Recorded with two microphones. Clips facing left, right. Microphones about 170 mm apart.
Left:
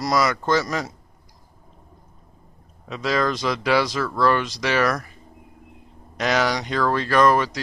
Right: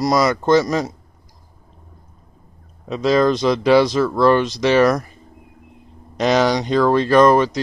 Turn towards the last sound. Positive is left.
turn(degrees=-25)  # may be behind; listen again after turning